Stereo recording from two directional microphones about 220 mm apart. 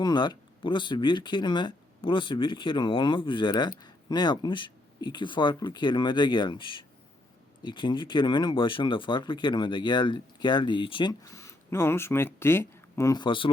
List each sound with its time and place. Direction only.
0.0 s speech: 20° left (ahead or behind)